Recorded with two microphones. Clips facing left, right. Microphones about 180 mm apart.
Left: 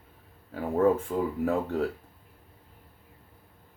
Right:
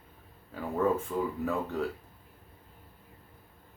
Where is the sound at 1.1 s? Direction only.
40° left (ahead or behind).